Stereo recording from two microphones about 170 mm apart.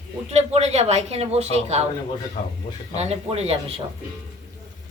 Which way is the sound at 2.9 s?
40° right (ahead or behind).